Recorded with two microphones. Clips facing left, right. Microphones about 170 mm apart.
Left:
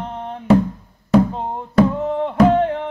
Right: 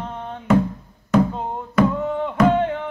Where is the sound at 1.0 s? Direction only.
35° left (ahead or behind).